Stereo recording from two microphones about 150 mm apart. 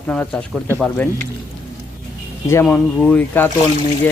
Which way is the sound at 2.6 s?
5° left (ahead or behind).